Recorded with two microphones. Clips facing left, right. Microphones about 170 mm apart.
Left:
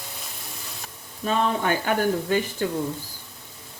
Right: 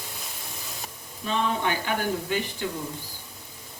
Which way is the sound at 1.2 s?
45° left (ahead or behind).